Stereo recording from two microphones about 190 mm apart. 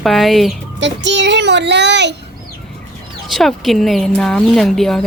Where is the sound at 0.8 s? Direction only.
70° right (ahead or behind).